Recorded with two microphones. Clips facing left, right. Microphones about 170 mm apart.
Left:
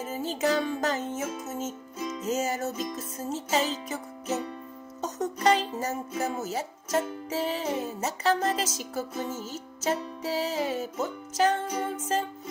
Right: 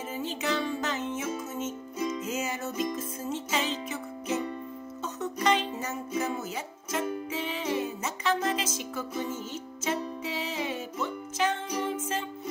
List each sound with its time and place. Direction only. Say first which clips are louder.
0.1 s music: left 4 dB; 40° left (ahead or behind)
5.0 s music: left 3 dB; 40° left (ahead or behind)